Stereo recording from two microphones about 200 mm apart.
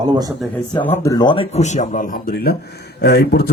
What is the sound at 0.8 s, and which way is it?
A man's voice, 15° left (ahead or behind).